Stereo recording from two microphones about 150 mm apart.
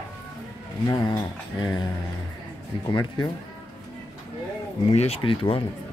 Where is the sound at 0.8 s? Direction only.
25° left (ahead or behind).